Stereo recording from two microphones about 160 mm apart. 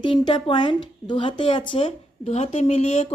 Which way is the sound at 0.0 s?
30° left (ahead or behind).